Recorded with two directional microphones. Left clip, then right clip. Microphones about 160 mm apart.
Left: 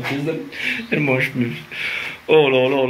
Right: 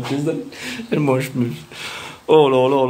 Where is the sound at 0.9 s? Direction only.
25° right (ahead or behind).